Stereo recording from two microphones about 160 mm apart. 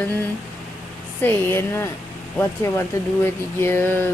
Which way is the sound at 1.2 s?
15° left (ahead or behind).